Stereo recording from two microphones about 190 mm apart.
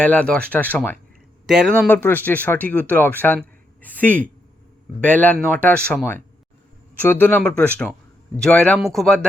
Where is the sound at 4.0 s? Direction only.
45° right (ahead or behind).